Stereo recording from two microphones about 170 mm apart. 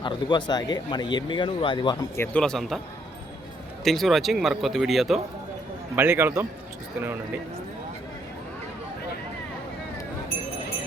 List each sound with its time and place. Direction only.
0.0 s speech: 25° left (ahead or behind)
2.0 s speech: 15° left (ahead or behind)
3.8 s speech: centre (ahead or behind)
6.0 s a man's voice: 15° right (ahead or behind)